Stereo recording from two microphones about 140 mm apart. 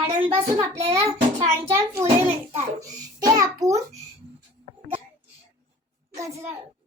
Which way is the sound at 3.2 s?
25° right (ahead or behind).